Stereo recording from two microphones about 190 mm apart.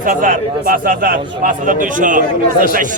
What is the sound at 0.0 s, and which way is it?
A man's voice, 45° right (ahead or behind).